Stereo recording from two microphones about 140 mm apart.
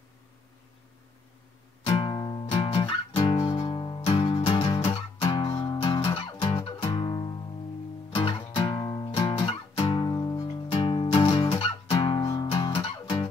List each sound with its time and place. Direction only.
1.9 s music: 35° left (ahead or behind)